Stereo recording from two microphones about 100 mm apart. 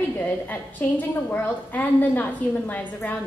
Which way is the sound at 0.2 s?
15° left (ahead or behind).